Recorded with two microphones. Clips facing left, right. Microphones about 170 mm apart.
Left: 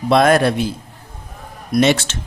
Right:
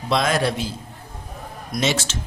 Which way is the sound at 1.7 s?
60° left (ahead or behind).